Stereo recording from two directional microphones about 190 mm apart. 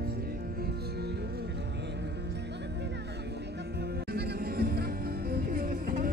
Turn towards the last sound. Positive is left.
turn(degrees=-50)  # may be behind; listen again after turning